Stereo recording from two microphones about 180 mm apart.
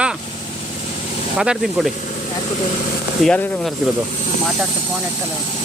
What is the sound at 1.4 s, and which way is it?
Speech, centre (ahead or behind).